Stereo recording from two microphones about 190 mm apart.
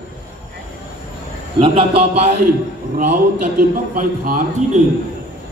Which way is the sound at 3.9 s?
45° right (ahead or behind).